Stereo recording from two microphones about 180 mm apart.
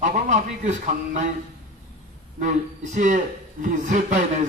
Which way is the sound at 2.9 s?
45° right (ahead or behind).